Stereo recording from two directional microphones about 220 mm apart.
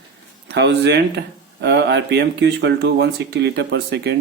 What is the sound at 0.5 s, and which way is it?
Speech, 50° right (ahead or behind).